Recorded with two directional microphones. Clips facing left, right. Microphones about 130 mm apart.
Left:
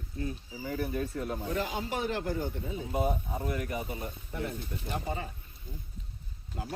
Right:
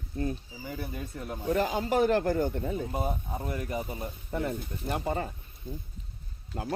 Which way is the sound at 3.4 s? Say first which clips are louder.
Even; 25° right (ahead or behind).